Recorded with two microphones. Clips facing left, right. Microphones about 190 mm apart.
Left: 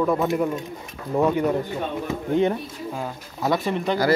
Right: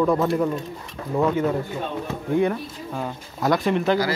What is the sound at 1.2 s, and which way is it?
A man's voice, 15° left (ahead or behind).